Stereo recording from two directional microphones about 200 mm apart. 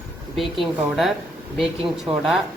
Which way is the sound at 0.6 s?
Centre (ahead or behind).